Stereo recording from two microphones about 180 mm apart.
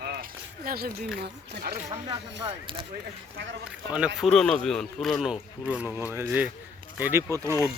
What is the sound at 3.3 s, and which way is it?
Speech, 70° right (ahead or behind).